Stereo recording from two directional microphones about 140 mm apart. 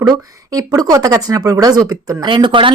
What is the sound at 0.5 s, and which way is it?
Speech, 25° right (ahead or behind).